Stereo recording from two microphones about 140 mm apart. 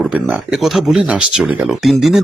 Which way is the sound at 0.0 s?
5° right (ahead or behind).